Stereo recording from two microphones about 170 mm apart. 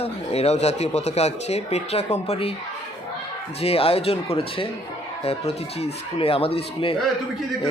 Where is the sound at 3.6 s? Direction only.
35° left (ahead or behind).